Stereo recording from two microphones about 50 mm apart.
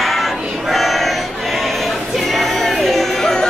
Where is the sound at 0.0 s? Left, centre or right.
Centre.